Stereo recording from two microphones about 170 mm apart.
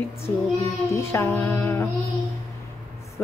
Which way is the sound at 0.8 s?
15° left (ahead or behind).